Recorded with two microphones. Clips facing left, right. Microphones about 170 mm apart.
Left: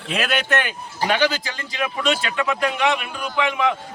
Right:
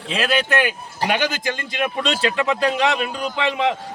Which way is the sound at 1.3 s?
50° right (ahead or behind).